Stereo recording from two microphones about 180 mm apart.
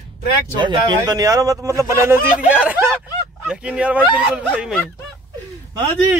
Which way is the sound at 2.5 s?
10° right (ahead or behind).